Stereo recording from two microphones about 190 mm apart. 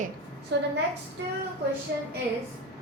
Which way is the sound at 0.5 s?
70° right (ahead or behind).